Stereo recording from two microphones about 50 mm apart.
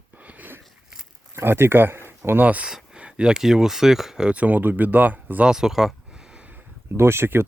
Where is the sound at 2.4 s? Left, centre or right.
Right.